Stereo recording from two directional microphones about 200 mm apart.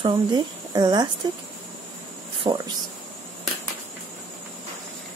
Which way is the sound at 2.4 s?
20° right (ahead or behind).